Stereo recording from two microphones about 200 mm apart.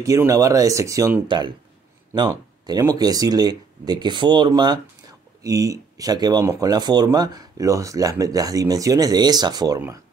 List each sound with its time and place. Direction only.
0.0 s speech: 15° right (ahead or behind)